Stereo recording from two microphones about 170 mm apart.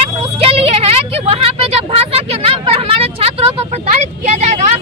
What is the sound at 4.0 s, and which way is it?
Vehicle, 40° right (ahead or behind).